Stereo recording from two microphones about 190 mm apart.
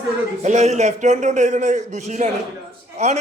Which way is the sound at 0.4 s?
35° right (ahead or behind).